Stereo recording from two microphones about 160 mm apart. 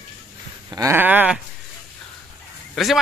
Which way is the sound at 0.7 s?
15° right (ahead or behind).